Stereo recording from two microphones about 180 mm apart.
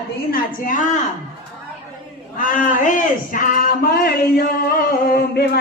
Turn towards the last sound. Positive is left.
turn(degrees=65)  # may be behind; listen again after turning